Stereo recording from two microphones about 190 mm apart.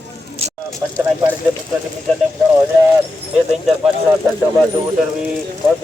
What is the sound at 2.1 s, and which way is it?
Speech, 5° left (ahead or behind).